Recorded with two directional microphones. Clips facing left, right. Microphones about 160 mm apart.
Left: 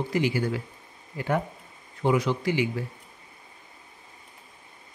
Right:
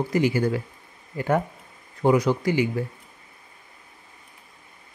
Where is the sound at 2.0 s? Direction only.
40° right (ahead or behind).